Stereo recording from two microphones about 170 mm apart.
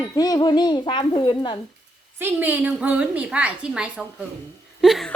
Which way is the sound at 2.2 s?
10° right (ahead or behind).